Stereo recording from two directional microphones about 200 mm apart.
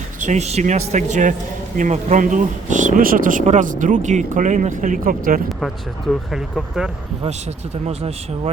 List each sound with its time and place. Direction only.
0.3 s a man's voice: 35° right (ahead or behind)
5.5 s speech: centre (ahead or behind)